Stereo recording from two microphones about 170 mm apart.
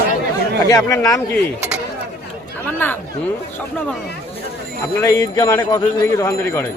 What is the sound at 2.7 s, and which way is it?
Speech, 10° left (ahead or behind).